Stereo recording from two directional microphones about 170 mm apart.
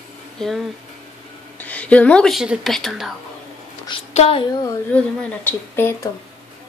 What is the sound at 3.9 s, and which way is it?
Speech, 35° left (ahead or behind).